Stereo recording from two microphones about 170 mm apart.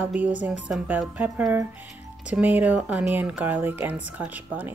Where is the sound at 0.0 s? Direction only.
10° right (ahead or behind).